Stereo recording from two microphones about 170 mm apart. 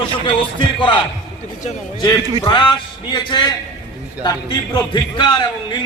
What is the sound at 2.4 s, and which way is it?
Speech, 25° left (ahead or behind).